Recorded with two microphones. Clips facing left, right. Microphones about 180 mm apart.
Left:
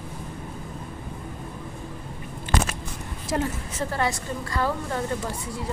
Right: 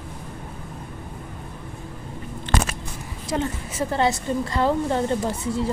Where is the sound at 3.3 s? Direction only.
Centre (ahead or behind).